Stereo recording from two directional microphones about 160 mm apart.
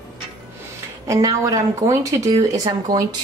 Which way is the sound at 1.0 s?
20° right (ahead or behind).